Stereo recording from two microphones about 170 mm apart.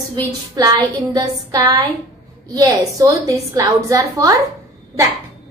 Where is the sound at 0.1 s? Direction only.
20° right (ahead or behind).